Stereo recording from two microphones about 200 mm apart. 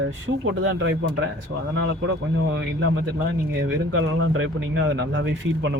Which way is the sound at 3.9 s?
75° right (ahead or behind).